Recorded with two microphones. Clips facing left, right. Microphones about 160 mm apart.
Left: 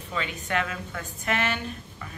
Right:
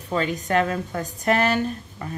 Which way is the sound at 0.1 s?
40° right (ahead or behind).